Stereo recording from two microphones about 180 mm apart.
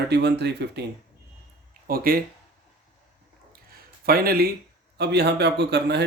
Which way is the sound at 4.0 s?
55° right (ahead or behind).